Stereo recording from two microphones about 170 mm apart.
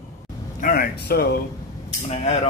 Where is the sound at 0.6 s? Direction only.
55° left (ahead or behind).